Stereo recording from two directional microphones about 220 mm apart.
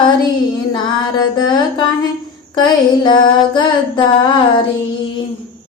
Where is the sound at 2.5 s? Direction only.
20° left (ahead or behind).